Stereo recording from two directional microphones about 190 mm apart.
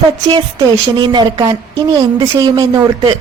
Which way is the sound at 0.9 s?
25° right (ahead or behind).